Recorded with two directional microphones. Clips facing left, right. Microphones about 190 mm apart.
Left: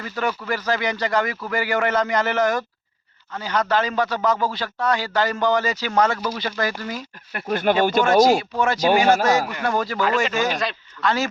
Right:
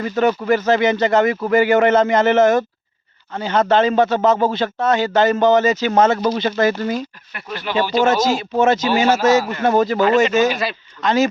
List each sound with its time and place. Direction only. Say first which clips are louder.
0.0 s a man's voice: right 8 dB; 25° right (ahead or behind)
7.3 s speech: left 2 dB; 50° left (ahead or behind)
8.0 s a man's voice: left 1 dB; 25° right (ahead or behind)
10.5 s a man's voice: right 3 dB; 5° right (ahead or behind)
11.0 s a man's voice: right 6 dB; 20° right (ahead or behind)